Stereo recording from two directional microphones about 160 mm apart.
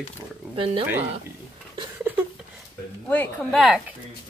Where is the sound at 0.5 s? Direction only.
35° right (ahead or behind).